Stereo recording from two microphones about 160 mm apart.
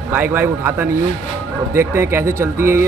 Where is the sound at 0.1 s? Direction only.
10° right (ahead or behind).